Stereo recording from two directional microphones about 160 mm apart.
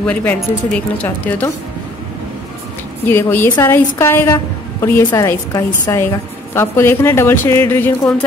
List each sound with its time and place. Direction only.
0.0 s a woman's voice: 10° left (ahead or behind)
3.1 s a woman's voice: 15° left (ahead or behind)